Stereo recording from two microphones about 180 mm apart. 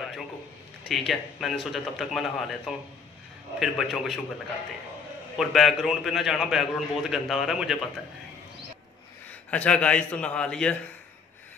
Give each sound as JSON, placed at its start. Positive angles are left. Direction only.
{"t": 0.8, "sound": "a man's voice", "side_deg": 0}
{"t": 5.4, "sound": "a man's voice", "side_deg": 0}
{"t": 9.5, "sound": "a man's voice", "side_deg": 5}